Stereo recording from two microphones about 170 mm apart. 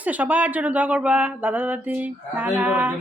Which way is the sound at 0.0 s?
10° right (ahead or behind).